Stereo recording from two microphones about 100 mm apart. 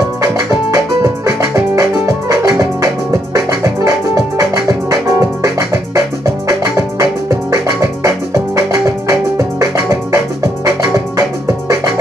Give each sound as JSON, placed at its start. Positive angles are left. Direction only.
{"t": 0.2, "sound": "music", "side_deg": -30}